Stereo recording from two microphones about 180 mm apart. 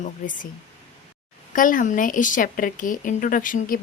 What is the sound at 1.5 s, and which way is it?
A woman's voice, 50° left (ahead or behind).